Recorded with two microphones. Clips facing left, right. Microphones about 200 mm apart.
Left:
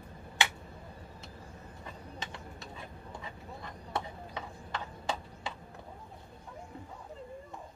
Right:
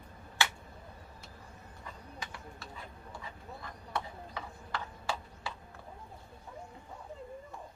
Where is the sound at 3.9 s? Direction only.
20° left (ahead or behind).